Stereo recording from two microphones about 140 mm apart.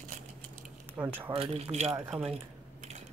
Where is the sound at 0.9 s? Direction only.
15° right (ahead or behind).